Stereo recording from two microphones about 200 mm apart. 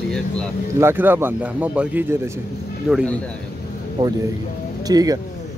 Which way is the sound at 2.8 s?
Centre (ahead or behind).